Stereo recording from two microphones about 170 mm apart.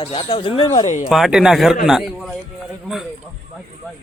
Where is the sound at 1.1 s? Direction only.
Centre (ahead or behind).